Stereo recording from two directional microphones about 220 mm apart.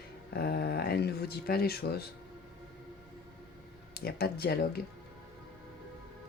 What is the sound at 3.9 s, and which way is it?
Speech, 45° left (ahead or behind).